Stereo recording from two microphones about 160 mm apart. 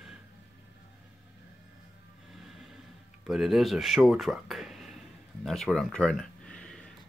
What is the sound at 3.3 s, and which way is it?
Speech, centre (ahead or behind).